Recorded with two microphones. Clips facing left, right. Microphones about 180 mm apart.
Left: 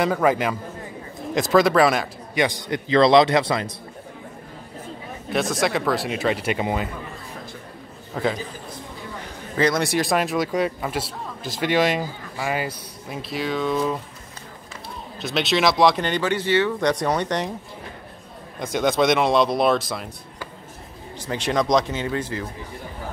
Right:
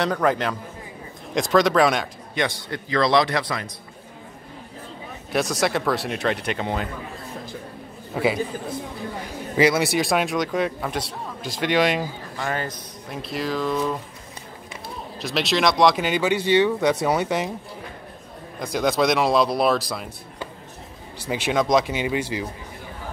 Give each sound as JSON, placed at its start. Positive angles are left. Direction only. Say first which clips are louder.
{"t": 0.0, "sound": "a man's voice", "louder": "left 2 dB", "side_deg": 5}
{"t": 2.4, "sound": "a man's voice", "louder": "left 3 dB", "side_deg": 20}
{"t": 5.3, "sound": "a man's voice", "louder": "even", "side_deg": 0}
{"t": 8.1, "sound": "a man's voice", "louder": "right 2 dB", "side_deg": -10}
{"t": 9.6, "sound": "a man's voice", "louder": "right 2 dB", "side_deg": -5}
{"t": 15.1, "sound": "speech", "louder": "left 1 dB", "side_deg": 0}
{"t": 18.6, "sound": "a man's voice", "louder": "left 1 dB", "side_deg": 0}
{"t": 21.2, "sound": "speech", "louder": "even", "side_deg": -10}